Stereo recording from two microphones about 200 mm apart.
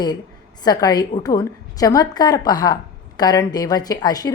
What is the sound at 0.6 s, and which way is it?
A woman's voice, 20° left (ahead or behind).